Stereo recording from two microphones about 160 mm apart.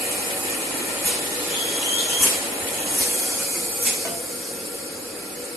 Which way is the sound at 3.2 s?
20° right (ahead or behind).